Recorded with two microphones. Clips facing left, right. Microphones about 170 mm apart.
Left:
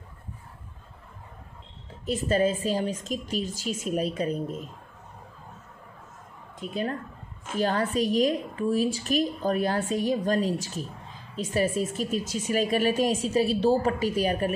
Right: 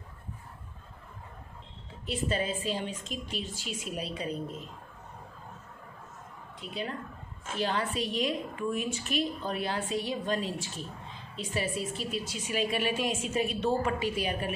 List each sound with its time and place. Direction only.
2.0 s a woman's voice: 45° left (ahead or behind)
6.6 s a woman's voice: 45° left (ahead or behind)